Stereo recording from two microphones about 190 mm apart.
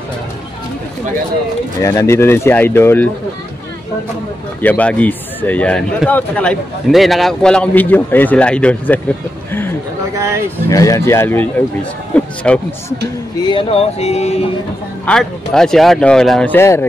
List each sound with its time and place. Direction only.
1.8 s speech: 15° left (ahead or behind)
4.6 s speech: 10° left (ahead or behind)
9.5 s a sound: 10° left (ahead or behind)
10.1 s speech: 15° right (ahead or behind)
10.7 s speech: 15° left (ahead or behind)
12.1 s a sound: 5° left (ahead or behind)
13.5 s speech: 30° left (ahead or behind)
15.0 s speech: 5° left (ahead or behind)